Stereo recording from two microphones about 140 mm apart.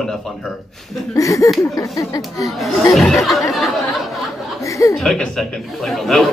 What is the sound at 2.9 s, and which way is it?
Speech, centre (ahead or behind).